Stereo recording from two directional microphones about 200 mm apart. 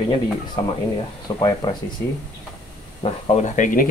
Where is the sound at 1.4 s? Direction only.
25° left (ahead or behind).